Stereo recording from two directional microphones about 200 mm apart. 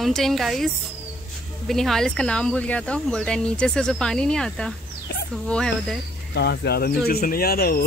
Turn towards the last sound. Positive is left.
turn(degrees=50)  # may be behind; listen again after turning